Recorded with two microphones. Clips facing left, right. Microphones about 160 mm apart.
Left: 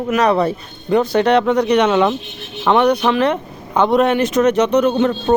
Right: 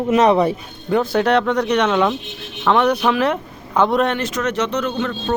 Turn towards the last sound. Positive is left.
turn(degrees=15)  # may be behind; listen again after turning